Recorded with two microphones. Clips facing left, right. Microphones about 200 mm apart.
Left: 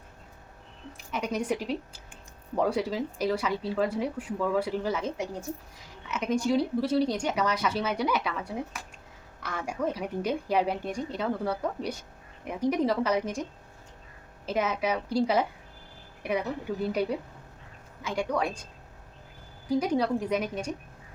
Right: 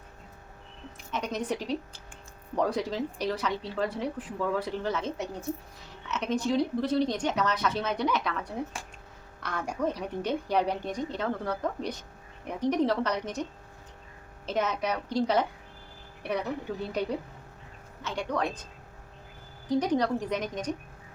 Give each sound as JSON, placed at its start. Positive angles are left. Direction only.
{"t": 1.1, "sound": "speech", "side_deg": 10}
{"t": 8.7, "sound": "speech", "side_deg": -30}
{"t": 9.4, "sound": "speech", "side_deg": 5}
{"t": 16.9, "sound": "speech", "side_deg": 10}
{"t": 19.6, "sound": "speech", "side_deg": 10}